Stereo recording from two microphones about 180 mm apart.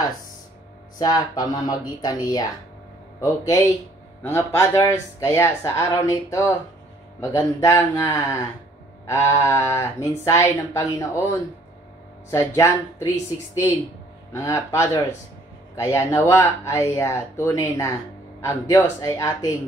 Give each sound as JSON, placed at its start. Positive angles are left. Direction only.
{"t": 0.9, "sound": "speech", "side_deg": 20}
{"t": 4.2, "sound": "speech", "side_deg": 15}
{"t": 14.3, "sound": "speech", "side_deg": 15}